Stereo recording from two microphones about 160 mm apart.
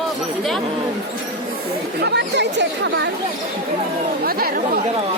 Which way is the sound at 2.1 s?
90° right.